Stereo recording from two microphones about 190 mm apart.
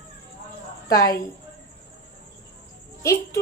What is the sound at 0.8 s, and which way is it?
Speech, 15° left (ahead or behind).